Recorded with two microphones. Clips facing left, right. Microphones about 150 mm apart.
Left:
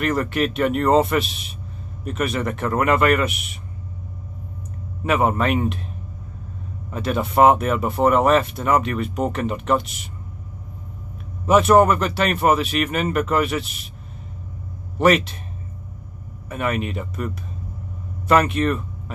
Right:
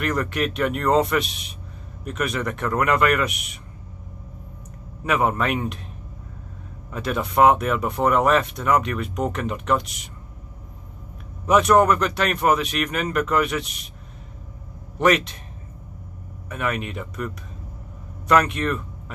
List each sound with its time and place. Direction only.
0.2 s speech: centre (ahead or behind)
5.0 s speech: centre (ahead or behind)
6.9 s speech: centre (ahead or behind)
11.4 s speech: 5° left (ahead or behind)
15.0 s speech: centre (ahead or behind)
16.4 s speech: 5° left (ahead or behind)